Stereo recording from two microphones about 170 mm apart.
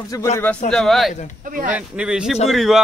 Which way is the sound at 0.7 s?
Centre (ahead or behind).